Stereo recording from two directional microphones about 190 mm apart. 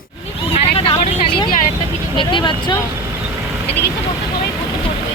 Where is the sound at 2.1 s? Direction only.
25° left (ahead or behind).